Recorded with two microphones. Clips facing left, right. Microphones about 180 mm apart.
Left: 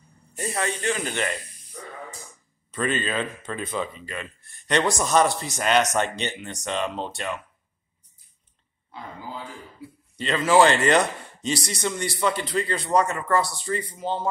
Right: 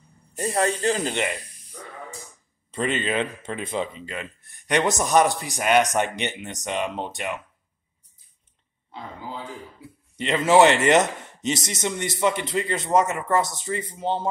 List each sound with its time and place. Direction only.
0.4 s speech: 35° right (ahead or behind)
1.1 s a man's voice: 15° right (ahead or behind)
2.7 s a man's voice: 25° right (ahead or behind)
10.1 s speech: 20° right (ahead or behind)